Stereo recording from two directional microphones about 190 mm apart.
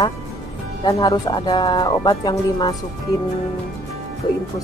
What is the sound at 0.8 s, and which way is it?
Speech, 20° left (ahead or behind).